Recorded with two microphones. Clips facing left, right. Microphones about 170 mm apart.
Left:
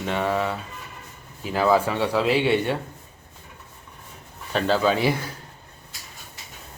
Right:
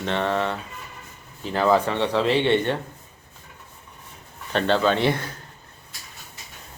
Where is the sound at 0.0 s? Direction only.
10° left (ahead or behind).